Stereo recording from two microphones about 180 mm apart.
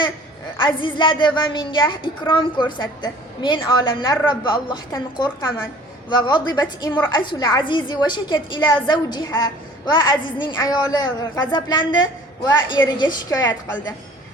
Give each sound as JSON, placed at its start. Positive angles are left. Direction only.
{"t": 0.5, "sound": "a woman's voice", "side_deg": 30}